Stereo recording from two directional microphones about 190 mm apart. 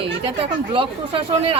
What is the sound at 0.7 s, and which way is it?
Speech, 30° right (ahead or behind).